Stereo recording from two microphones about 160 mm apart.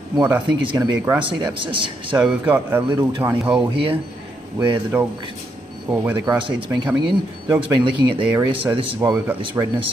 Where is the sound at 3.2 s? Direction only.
10° right (ahead or behind).